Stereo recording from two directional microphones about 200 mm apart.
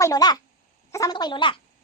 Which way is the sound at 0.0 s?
20° left (ahead or behind).